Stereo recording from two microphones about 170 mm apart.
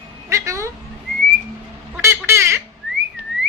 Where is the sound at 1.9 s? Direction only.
15° right (ahead or behind).